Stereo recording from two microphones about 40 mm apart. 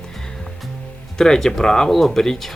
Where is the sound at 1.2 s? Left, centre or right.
Centre.